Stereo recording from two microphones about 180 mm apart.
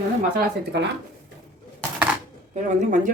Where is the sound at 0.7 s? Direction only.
75° right (ahead or behind).